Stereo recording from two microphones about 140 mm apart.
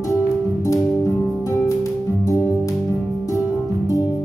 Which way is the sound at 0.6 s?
20° left (ahead or behind).